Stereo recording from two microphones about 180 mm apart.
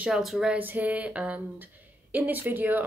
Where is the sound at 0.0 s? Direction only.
Centre (ahead or behind).